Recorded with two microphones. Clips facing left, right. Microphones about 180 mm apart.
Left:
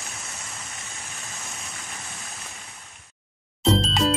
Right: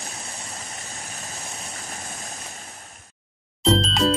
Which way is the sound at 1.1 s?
40° right (ahead or behind).